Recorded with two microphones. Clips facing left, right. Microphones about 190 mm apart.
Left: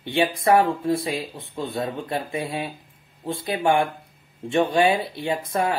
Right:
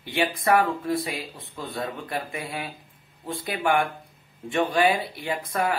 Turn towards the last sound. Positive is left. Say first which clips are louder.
# left 2 dB
turn(degrees=25)  # may be behind; listen again after turning